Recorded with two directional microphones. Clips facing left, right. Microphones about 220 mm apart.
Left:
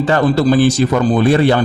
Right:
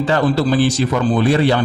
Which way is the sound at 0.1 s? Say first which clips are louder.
Left 4 dB; 50° left (ahead or behind).